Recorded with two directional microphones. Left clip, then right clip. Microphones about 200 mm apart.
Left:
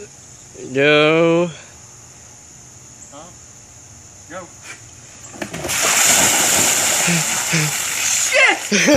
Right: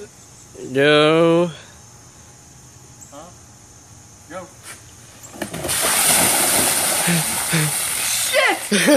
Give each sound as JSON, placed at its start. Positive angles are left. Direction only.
{"t": 0.7, "sound": "speech", "side_deg": 0}
{"t": 4.3, "sound": "dog", "side_deg": 0}
{"t": 5.4, "sound": "a sound", "side_deg": 0}